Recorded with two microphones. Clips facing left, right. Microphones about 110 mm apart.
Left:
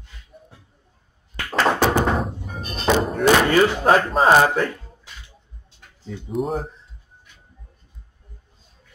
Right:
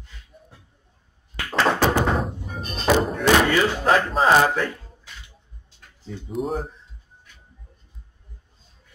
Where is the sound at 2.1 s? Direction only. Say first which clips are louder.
Left 1 dB; centre (ahead or behind).